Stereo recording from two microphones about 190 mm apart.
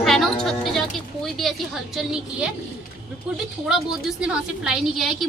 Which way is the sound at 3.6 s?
5° right (ahead or behind).